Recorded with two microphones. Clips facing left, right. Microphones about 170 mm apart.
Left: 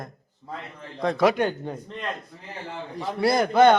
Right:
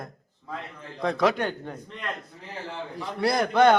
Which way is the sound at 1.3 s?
20° left (ahead or behind).